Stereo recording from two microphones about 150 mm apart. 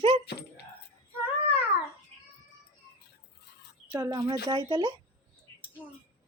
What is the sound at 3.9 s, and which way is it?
Speech, 25° right (ahead or behind).